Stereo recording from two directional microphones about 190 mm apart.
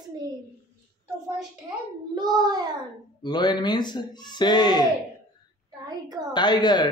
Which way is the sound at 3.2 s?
25° left (ahead or behind).